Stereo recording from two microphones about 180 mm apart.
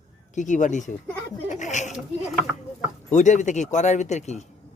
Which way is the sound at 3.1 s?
40° left (ahead or behind).